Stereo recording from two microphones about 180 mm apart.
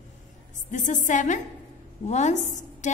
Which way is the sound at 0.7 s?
45° left (ahead or behind).